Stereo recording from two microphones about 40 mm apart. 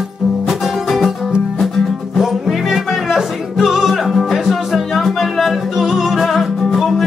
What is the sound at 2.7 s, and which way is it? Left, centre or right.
Music, centre.